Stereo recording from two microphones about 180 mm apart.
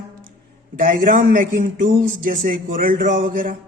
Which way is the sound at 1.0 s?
50° right (ahead or behind).